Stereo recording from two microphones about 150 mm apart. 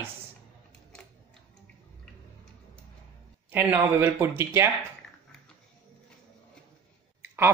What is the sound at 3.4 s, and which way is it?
Speech, 15° right (ahead or behind).